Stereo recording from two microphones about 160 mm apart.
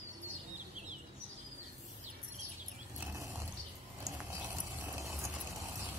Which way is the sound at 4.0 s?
15° right (ahead or behind).